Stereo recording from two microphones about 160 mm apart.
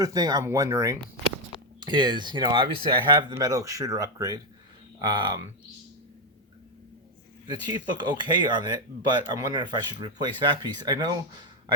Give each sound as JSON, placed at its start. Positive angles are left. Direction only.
{"t": 0.0, "sound": "speech", "side_deg": -25}
{"t": 3.3, "sound": "speech", "side_deg": -20}
{"t": 7.4, "sound": "speech", "side_deg": -25}